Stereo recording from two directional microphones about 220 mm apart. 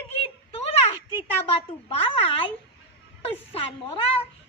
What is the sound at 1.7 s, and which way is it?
A woman's voice, 25° left (ahead or behind).